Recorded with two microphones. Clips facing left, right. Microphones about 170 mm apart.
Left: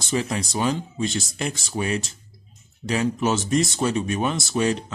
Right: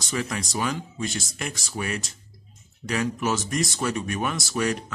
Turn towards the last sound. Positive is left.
turn(degrees=25)  # may be behind; listen again after turning